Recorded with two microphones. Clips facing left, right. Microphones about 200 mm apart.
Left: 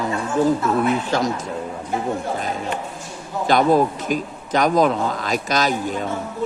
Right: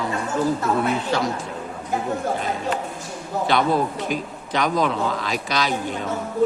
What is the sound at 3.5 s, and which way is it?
A man's voice, 45° left (ahead or behind).